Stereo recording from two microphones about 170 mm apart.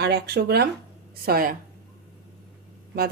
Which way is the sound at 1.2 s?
60° right (ahead or behind).